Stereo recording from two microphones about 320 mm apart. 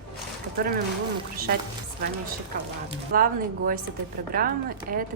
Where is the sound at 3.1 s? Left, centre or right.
Right.